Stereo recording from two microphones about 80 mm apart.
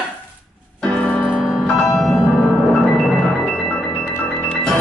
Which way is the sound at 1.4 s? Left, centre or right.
Centre.